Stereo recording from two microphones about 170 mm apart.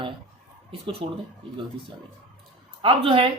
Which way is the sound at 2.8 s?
30° right (ahead or behind).